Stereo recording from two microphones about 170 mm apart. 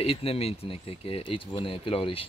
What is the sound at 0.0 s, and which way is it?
Speech, 35° left (ahead or behind).